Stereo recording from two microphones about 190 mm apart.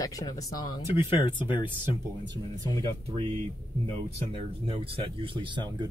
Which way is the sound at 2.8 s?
30° right (ahead or behind).